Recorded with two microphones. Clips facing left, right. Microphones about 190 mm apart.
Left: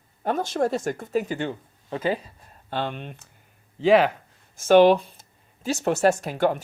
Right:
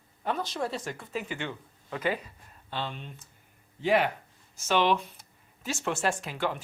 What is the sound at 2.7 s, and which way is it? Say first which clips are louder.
Speech: left 7 dB; 55° left (ahead or behind).